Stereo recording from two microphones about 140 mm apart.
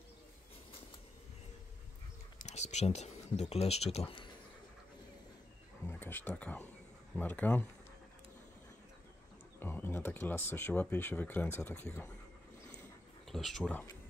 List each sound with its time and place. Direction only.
2.4 s speech: 55° left (ahead or behind)
5.9 s speech: 15° left (ahead or behind)
9.6 s speech: 15° left (ahead or behind)
13.3 s speech: centre (ahead or behind)